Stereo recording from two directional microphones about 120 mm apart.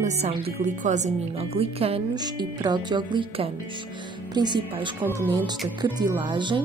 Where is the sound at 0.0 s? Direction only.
70° right (ahead or behind).